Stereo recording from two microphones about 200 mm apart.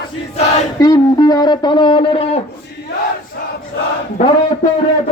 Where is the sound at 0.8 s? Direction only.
20° left (ahead or behind).